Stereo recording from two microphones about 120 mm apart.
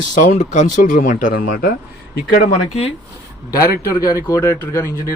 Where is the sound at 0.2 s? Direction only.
90° left.